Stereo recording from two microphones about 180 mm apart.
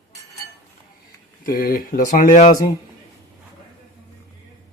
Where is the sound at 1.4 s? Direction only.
55° left (ahead or behind).